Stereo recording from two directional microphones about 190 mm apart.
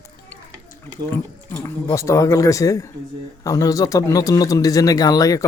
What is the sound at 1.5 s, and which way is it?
Speech, 15° left (ahead or behind).